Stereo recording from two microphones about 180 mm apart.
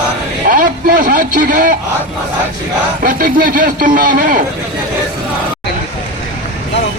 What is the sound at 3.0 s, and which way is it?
A man's voice, 50° right (ahead or behind).